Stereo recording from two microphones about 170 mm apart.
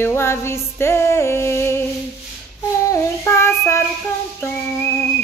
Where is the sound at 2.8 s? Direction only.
15° left (ahead or behind).